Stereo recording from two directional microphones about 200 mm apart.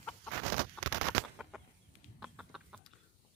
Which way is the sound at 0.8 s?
5° left (ahead or behind).